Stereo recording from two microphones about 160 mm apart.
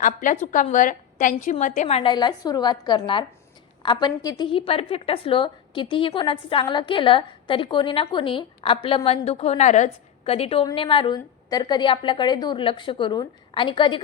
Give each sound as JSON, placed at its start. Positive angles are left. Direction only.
{"t": 0.0, "sound": "a woman's voice", "side_deg": 55}